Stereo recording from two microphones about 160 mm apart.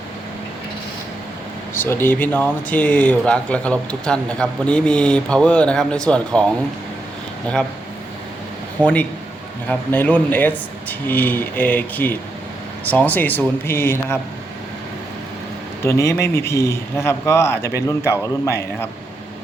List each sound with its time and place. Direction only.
1.7 s speech: 15° left (ahead or behind)
8.8 s speech: 10° left (ahead or behind)
15.8 s speech: 15° left (ahead or behind)